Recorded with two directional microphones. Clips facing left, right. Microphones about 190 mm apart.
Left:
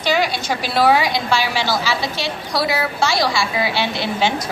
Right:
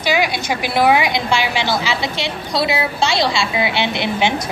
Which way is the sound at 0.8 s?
15° right (ahead or behind).